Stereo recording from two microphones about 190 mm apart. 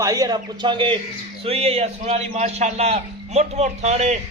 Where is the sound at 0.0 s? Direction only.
20° right (ahead or behind).